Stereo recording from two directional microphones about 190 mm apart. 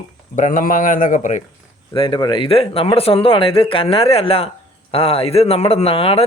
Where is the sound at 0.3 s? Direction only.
45° left (ahead or behind).